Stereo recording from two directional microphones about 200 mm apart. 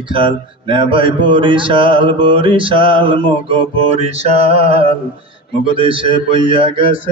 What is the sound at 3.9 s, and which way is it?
Mantra, 30° right (ahead or behind).